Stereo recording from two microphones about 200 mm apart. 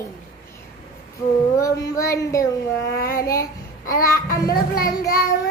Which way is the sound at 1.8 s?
15° left (ahead or behind).